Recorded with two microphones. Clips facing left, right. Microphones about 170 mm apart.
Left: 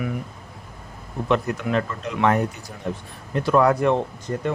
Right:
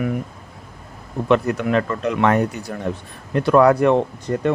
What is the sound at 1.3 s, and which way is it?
Speech, 65° right (ahead or behind).